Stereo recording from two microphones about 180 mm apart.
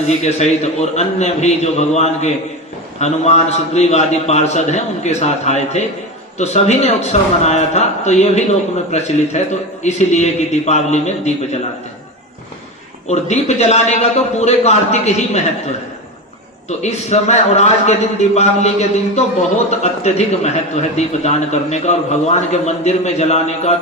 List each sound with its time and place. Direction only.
0.1 s a man's voice: 40° left (ahead or behind)
13.1 s a man's voice: 40° left (ahead or behind)
16.6 s a man's voice: 40° left (ahead or behind)